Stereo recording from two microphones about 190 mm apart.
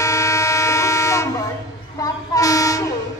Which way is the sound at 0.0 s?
15° left (ahead or behind).